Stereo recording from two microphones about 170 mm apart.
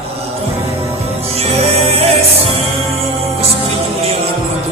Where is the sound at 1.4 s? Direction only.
35° right (ahead or behind).